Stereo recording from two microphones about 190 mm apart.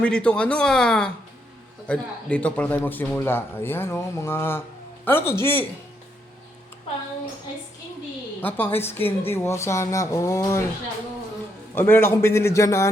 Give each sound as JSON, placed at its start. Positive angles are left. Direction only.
{"t": 0.0, "sound": "speech", "side_deg": 5}
{"t": 8.4, "sound": "speech", "side_deg": 10}
{"t": 11.7, "sound": "speech", "side_deg": 10}